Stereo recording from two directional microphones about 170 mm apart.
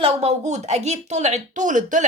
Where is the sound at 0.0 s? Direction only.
35° right (ahead or behind).